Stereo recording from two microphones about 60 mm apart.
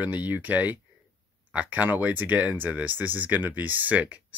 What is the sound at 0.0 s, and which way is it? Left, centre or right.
Speech, right.